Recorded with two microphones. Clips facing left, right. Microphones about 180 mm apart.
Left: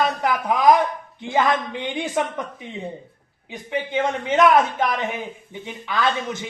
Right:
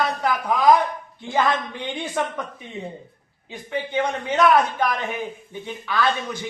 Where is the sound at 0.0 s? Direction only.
20° left (ahead or behind).